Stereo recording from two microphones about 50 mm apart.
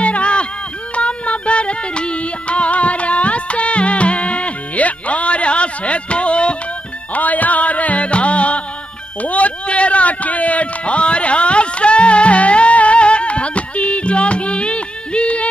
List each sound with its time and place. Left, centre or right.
0.0 s music: left
7.2 s music: left
9.2 s a sound: left